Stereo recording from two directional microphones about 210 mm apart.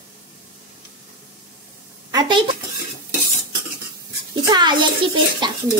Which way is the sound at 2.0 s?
20° right (ahead or behind).